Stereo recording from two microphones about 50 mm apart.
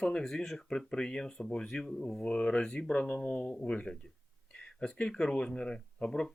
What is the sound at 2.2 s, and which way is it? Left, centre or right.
Speech, left.